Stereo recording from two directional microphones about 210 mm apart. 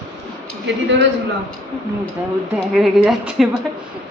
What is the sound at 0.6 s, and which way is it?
Speech, 55° right (ahead or behind).